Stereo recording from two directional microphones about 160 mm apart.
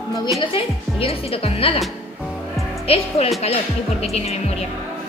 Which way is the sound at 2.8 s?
40° left (ahead or behind).